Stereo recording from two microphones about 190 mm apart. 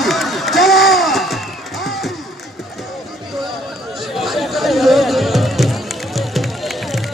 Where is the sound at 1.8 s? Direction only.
Centre (ahead or behind).